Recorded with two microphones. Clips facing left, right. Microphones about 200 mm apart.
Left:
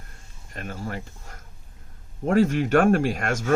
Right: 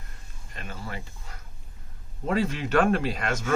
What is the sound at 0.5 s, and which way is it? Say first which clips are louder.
Speech: left 5 dB; 45° left (ahead or behind).